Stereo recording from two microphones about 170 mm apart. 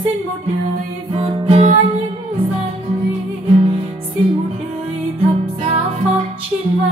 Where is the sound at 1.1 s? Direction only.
30° right (ahead or behind).